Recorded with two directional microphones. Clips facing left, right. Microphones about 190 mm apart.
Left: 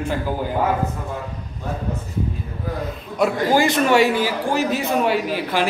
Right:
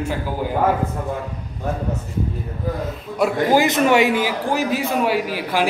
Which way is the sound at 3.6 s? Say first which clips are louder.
Even; 15° right (ahead or behind).